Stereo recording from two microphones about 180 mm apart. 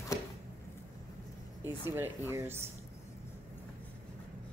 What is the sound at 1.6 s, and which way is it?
Speech, 10° right (ahead or behind).